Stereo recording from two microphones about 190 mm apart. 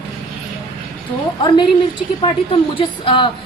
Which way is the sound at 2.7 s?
25° left (ahead or behind).